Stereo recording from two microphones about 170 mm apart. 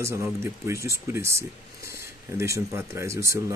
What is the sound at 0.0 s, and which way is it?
Speech, 15° right (ahead or behind).